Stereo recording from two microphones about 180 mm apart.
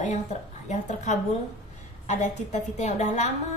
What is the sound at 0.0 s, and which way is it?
A woman's voice, 40° left (ahead or behind).